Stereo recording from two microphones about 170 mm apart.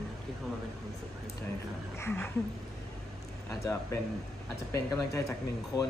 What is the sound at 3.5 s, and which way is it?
Speech, 15° left (ahead or behind).